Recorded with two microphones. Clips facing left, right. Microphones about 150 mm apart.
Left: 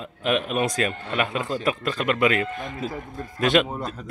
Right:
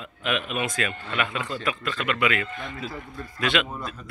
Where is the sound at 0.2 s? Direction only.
40° left (ahead or behind).